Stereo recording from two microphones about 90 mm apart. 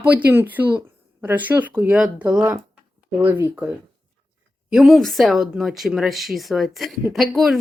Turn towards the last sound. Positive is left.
turn(degrees=0)  # may be behind; listen again after turning